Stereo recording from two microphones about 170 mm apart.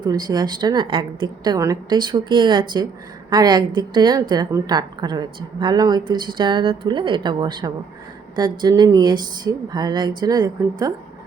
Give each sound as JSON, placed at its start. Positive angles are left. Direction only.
{"t": 0.0, "sound": "a woman's voice", "side_deg": -25}